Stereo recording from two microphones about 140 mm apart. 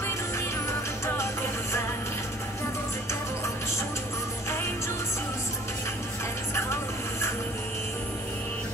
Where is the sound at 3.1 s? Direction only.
20° left (ahead or behind).